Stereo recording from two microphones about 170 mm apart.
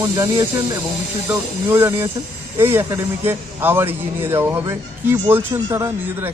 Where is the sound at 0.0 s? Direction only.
20° right (ahead or behind).